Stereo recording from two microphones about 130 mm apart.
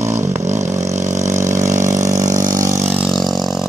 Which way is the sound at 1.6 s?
25° right (ahead or behind).